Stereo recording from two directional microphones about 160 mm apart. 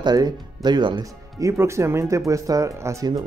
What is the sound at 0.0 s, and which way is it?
Speech, 25° right (ahead or behind).